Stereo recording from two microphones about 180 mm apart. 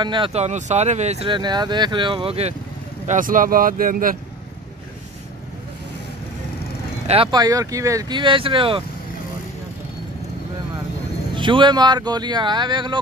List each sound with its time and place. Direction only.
0.0 s speech: 25° right (ahead or behind)
3.1 s speech: 50° right (ahead or behind)
7.1 s speech: 30° right (ahead or behind)
11.3 s speech: 25° right (ahead or behind)